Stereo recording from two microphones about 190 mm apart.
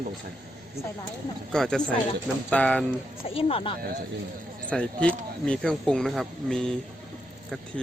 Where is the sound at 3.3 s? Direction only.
30° left (ahead or behind).